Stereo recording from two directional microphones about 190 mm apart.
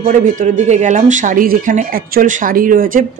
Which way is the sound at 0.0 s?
40° right (ahead or behind).